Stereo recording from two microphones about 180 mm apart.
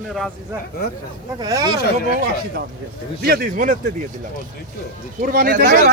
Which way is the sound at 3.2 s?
55° right (ahead or behind).